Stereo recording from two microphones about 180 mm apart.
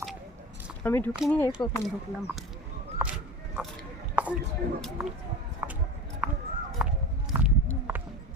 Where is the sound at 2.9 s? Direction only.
10° right (ahead or behind).